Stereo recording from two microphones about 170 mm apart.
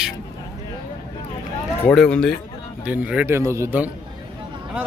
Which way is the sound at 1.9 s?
5° left (ahead or behind).